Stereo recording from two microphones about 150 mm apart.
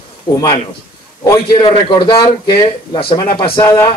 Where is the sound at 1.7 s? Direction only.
35° left (ahead or behind).